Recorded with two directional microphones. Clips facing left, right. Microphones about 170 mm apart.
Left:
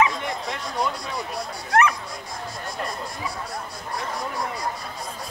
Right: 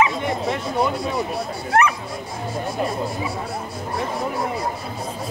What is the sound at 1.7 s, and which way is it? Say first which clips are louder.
Speech: right 1 dB; 10° right (ahead or behind).